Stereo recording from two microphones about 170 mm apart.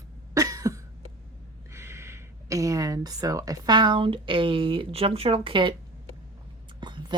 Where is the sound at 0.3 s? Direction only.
20° right (ahead or behind).